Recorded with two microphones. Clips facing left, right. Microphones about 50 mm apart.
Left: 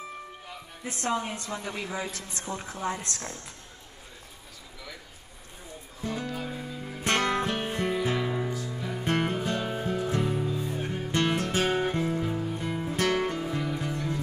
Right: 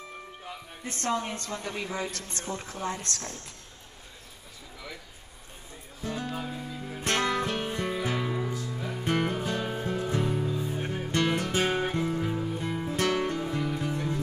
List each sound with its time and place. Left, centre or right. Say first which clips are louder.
0.8 s a woman's voice: even; centre
6.4 s music: left 1 dB; centre